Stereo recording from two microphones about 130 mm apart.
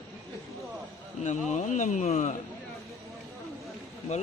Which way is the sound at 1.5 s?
70° left (ahead or behind).